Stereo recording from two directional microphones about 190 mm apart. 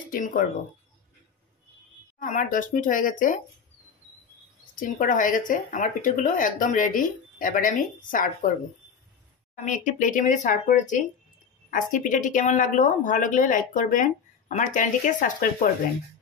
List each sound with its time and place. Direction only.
0.1 s speech: 45° left (ahead or behind)
2.1 s speech: 45° left (ahead or behind)
4.7 s speech: 45° left (ahead or behind)
9.7 s speech: 40° left (ahead or behind)